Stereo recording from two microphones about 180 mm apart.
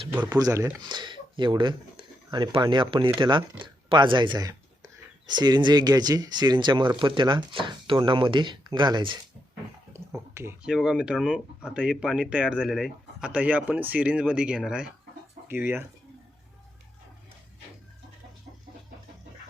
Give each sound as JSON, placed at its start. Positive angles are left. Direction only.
{"t": 0.3, "sound": "speech", "side_deg": -20}
{"t": 9.9, "sound": "finger snapping", "side_deg": -15}
{"t": 10.6, "sound": "speech", "side_deg": -5}